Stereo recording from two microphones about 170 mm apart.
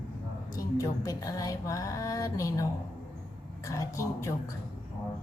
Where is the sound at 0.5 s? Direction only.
20° left (ahead or behind).